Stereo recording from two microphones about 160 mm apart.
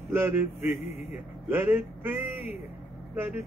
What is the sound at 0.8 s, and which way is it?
Speech, 45° left (ahead or behind).